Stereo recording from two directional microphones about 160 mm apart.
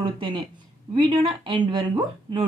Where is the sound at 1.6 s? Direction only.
30° right (ahead or behind).